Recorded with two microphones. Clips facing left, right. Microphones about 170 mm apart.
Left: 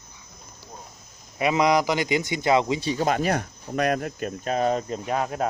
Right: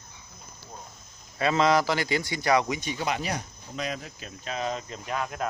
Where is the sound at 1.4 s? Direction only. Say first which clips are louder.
Left 2 dB; 15° left (ahead or behind).